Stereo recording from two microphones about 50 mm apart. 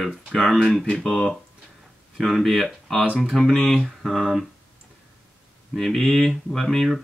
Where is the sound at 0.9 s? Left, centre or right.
Centre.